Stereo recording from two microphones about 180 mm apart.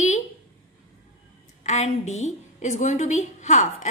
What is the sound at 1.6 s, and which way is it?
A woman's voice, 40° left (ahead or behind).